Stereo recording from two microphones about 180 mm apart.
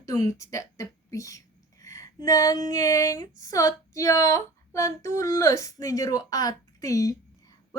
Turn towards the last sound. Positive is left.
turn(degrees=20)  # may be behind; listen again after turning